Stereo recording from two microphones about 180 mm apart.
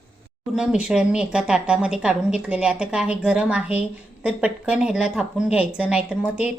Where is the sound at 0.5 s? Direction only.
5° right (ahead or behind).